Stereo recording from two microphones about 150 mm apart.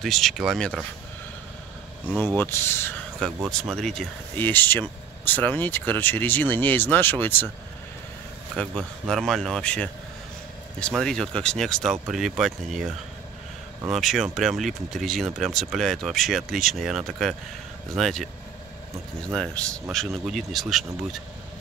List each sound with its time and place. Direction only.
0.0 s speech: centre (ahead or behind)
2.0 s speech: 5° right (ahead or behind)
2.3 s speech: 15° left (ahead or behind)
3.4 s speech: centre (ahead or behind)
4.4 s speech: 15° left (ahead or behind)
8.5 s speech: 5° left (ahead or behind)
19.3 s speech: 5° left (ahead or behind)